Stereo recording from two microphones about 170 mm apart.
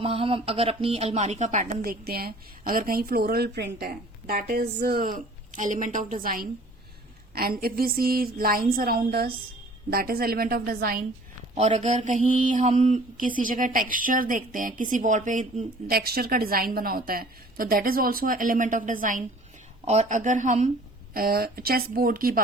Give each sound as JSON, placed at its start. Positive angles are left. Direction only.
{"t": 0.0, "sound": "mantra", "side_deg": -35}
{"t": 7.3, "sound": "speech", "side_deg": -60}
{"t": 11.5, "sound": "mantra", "side_deg": -40}
{"t": 21.1, "sound": "speech", "side_deg": -60}